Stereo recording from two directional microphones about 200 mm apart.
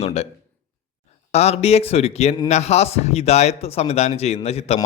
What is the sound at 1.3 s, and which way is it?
Speech, 30° left (ahead or behind).